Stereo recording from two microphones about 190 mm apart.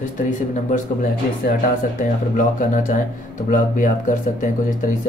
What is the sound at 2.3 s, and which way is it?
Speech, 45° left (ahead or behind).